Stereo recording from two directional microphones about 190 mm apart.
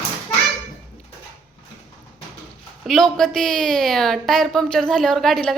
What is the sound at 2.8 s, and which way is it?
Speech, centre (ahead or behind).